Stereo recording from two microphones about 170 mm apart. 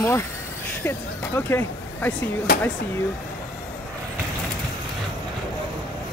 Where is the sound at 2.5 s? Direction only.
65° left (ahead or behind).